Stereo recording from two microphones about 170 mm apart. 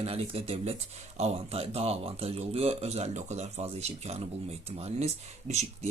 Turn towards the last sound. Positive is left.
turn(degrees=-40)  # may be behind; listen again after turning